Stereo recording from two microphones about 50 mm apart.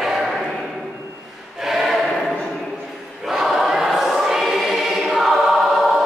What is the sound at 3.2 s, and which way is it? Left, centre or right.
Choir, centre.